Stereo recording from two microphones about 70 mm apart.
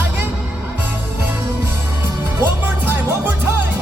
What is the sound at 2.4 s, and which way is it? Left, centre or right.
Music, right.